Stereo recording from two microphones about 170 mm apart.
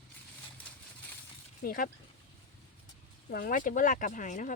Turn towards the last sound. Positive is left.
turn(degrees=50)  # may be behind; listen again after turning